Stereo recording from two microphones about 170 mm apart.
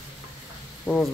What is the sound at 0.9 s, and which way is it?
Speech, 10° left (ahead or behind).